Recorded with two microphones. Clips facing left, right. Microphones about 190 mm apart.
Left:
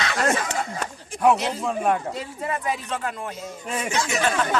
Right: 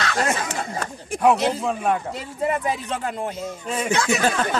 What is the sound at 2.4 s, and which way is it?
Speech, 25° right (ahead or behind).